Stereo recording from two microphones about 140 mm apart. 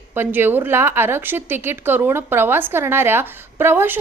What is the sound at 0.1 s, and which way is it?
A woman's voice, 15° right (ahead or behind).